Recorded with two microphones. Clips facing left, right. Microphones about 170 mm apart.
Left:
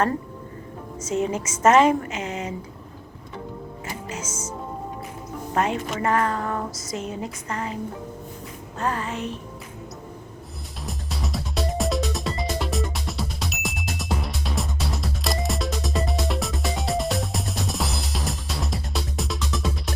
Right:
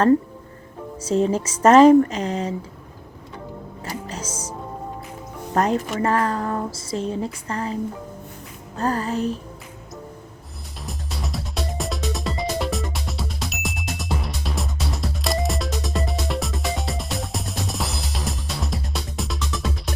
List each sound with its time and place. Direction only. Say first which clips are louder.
0.9 s speech: right 5 dB; 30° right (ahead or behind)
3.8 s music: right 3 dB; 35° right (ahead or behind)
5.5 s speech: right 4 dB; 40° right (ahead or behind)
8.8 s speech: right 4 dB; 35° right (ahead or behind)
10.8 s music: even; centre (ahead or behind)